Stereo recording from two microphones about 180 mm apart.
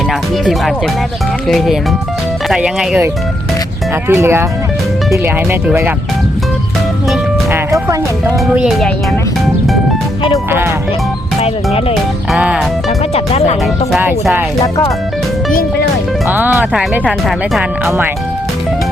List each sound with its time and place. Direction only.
1.5 s speech: centre (ahead or behind)
4.1 s speech: 15° right (ahead or behind)
7.5 s music: 15° right (ahead or behind)
8.5 s speech: 5° right (ahead or behind)
11.3 s speech: 35° left (ahead or behind)
12.3 s speech: 5° right (ahead or behind)
13.1 s speech: 35° left (ahead or behind)
16.3 s speech: 10° right (ahead or behind)